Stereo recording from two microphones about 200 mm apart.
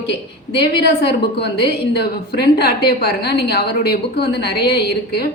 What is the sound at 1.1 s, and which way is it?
Speech, 55° left (ahead or behind).